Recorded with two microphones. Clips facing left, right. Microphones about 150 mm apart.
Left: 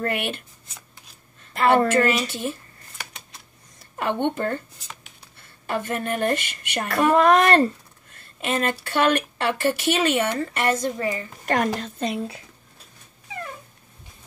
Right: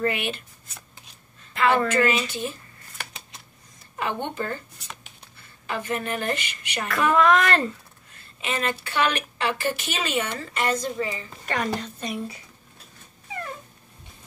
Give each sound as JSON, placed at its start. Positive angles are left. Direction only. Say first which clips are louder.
{"t": 0.0, "sound": "a woman's voice", "louder": "even", "side_deg": 50}
{"t": 1.5, "sound": "a woman's voice", "louder": "left 3 dB", "side_deg": 40}
{"t": 4.0, "sound": "a woman's voice", "louder": "left 5 dB", "side_deg": 60}
{"t": 5.7, "sound": "a woman's voice", "louder": "left 2 dB", "side_deg": 50}
{"t": 6.9, "sound": "a woman's voice", "louder": "left 2 dB", "side_deg": 40}
{"t": 8.4, "sound": "a woman's voice", "louder": "left 3 dB", "side_deg": 50}
{"t": 11.8, "sound": "a woman's voice", "louder": "left 4 dB", "side_deg": 60}